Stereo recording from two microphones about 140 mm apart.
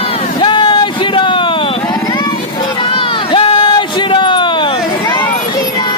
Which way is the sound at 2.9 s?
40° left (ahead or behind).